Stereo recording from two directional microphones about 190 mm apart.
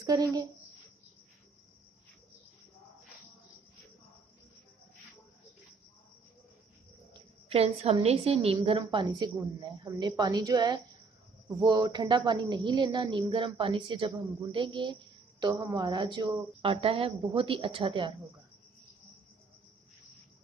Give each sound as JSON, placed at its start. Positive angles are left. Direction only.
{"t": 0.0, "sound": "speech", "side_deg": -20}
{"t": 7.2, "sound": "a woman's voice", "side_deg": -30}